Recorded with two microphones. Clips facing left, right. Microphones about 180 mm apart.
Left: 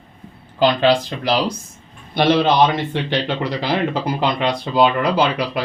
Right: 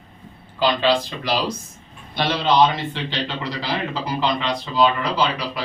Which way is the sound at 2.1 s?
50° left (ahead or behind).